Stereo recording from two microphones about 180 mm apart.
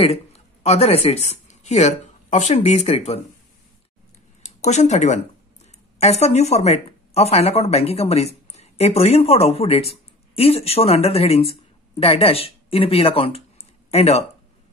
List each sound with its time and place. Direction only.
0.7 s speech: 35° left (ahead or behind)
4.4 s speech: 40° left (ahead or behind)